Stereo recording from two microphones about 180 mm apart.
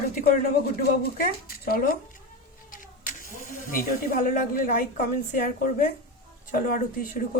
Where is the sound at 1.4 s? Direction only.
55° left (ahead or behind).